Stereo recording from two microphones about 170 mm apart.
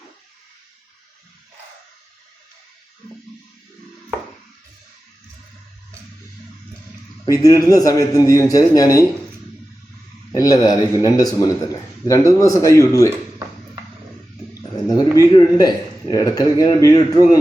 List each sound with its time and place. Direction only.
7.3 s a man's voice: 20° left (ahead or behind)
10.3 s a man's voice: 20° left (ahead or behind)
14.8 s a man's voice: 20° left (ahead or behind)